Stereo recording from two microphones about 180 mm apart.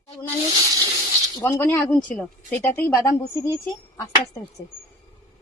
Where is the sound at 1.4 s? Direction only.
10° left (ahead or behind).